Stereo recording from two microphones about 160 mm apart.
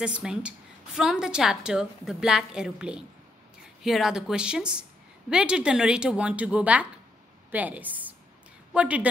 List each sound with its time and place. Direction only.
0.0 s a woman's voice: 5° right (ahead or behind)